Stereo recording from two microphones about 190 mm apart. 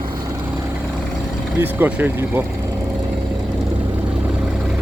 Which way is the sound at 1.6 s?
10° right (ahead or behind).